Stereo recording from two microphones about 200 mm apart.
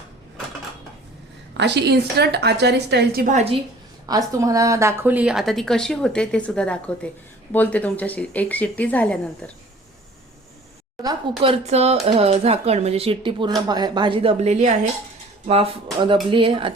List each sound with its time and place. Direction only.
1.5 s a woman's voice: 60° right (ahead or behind)
3.3 s speech: 30° right (ahead or behind)
4.1 s a woman's voice: 15° right (ahead or behind); by 9.5 s 5° left (ahead or behind)
11.0 s speech: 25° right (ahead or behind)